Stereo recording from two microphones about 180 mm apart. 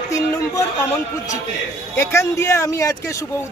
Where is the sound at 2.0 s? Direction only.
15° left (ahead or behind).